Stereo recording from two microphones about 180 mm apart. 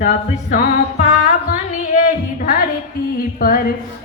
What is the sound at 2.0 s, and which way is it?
Music, 50° left (ahead or behind).